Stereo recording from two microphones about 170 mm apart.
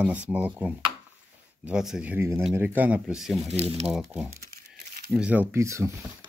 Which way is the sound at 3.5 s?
40° right (ahead or behind).